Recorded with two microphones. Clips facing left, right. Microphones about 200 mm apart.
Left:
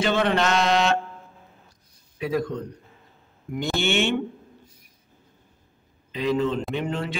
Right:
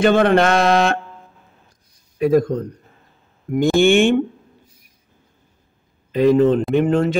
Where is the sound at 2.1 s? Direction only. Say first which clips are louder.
Right 10 dB; 45° right (ahead or behind).